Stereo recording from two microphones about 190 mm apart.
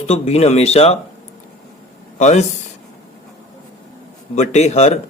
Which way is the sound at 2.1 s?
40° left (ahead or behind).